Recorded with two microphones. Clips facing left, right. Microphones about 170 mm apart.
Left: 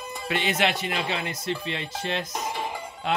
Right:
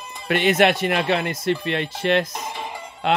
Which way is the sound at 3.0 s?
75° right (ahead or behind).